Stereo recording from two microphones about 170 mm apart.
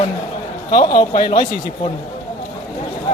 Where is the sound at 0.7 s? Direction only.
25° left (ahead or behind).